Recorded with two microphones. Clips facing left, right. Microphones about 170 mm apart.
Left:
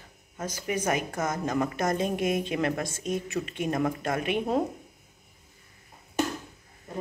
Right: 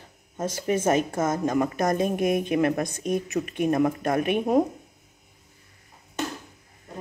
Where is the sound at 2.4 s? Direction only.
20° right (ahead or behind).